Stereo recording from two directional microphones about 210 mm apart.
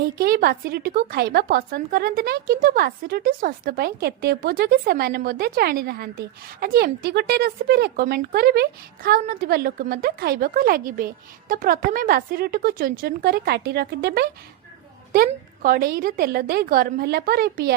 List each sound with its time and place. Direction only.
0.0 s a woman's voice: 45° right (ahead or behind)
15.3 s a woman's voice: 40° right (ahead or behind)